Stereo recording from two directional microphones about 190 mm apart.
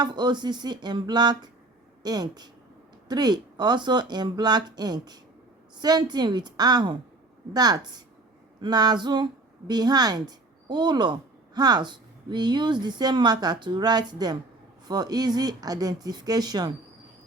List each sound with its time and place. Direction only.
0.0 s a woman's voice: 25° right (ahead or behind)